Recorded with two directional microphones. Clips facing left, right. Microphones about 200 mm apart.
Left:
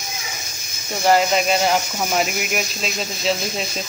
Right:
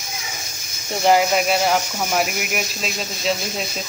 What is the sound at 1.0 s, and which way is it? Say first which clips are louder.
Speech: even; 10° right (ahead or behind).